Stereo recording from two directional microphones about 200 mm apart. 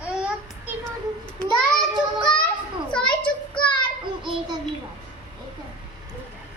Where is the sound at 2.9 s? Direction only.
5° left (ahead or behind).